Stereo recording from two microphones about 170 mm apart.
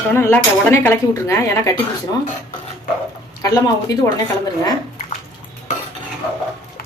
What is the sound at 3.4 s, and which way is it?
Speech, 20° left (ahead or behind).